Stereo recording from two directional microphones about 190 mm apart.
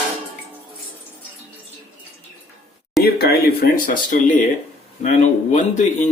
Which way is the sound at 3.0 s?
55° left (ahead or behind).